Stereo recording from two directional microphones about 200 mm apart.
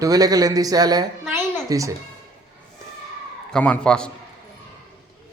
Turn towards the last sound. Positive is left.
turn(degrees=5)  # may be behind; listen again after turning